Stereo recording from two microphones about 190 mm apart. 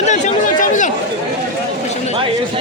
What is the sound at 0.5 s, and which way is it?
Chatter, 45° left (ahead or behind).